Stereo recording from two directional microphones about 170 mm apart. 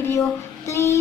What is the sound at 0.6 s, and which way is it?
Music, 15° left (ahead or behind).